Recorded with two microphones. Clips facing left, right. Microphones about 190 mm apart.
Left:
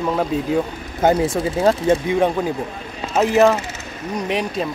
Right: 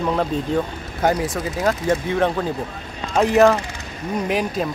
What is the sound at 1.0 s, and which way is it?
Speech, 25° left (ahead or behind).